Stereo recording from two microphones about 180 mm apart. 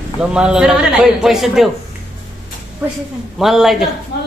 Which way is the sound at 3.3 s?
Centre (ahead or behind).